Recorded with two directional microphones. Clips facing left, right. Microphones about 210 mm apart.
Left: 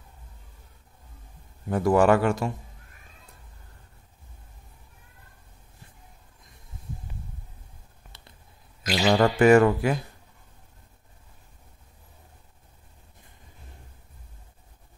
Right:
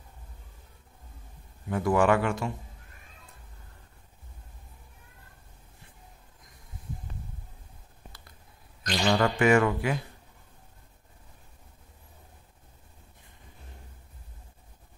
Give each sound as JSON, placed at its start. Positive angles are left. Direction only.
{"t": 1.7, "sound": "speech", "side_deg": 40}
{"t": 8.8, "sound": "music", "side_deg": 10}
{"t": 9.4, "sound": "speech", "side_deg": 40}